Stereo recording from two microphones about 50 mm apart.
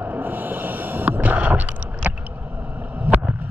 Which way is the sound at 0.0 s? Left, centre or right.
Right.